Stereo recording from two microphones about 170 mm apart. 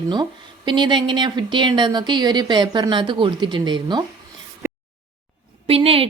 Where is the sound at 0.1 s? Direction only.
25° right (ahead or behind).